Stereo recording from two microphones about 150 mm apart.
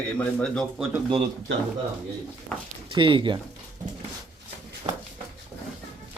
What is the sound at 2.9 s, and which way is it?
Speech, 35° right (ahead or behind).